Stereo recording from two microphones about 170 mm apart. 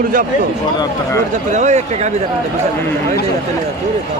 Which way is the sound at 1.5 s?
45° right (ahead or behind).